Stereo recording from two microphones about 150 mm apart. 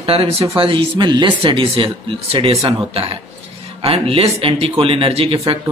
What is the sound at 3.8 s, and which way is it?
Speech, 40° right (ahead or behind).